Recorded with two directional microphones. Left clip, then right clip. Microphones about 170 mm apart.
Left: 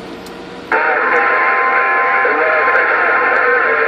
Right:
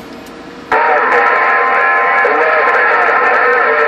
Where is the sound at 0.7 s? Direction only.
45° right (ahead or behind).